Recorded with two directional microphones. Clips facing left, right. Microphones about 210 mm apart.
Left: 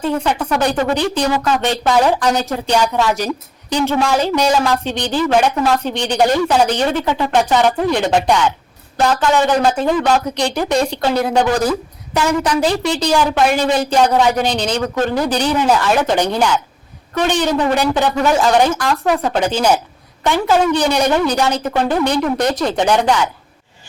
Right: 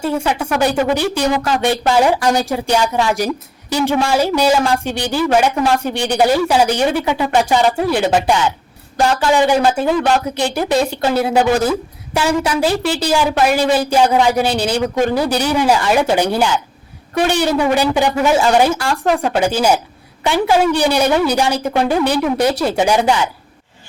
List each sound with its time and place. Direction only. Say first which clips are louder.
0.0 s speech: even; 10° right (ahead or behind)